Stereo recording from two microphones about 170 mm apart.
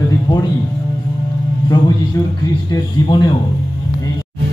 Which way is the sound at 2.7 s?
25° left (ahead or behind).